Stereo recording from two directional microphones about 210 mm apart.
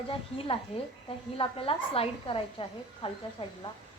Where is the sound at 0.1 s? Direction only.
25° left (ahead or behind).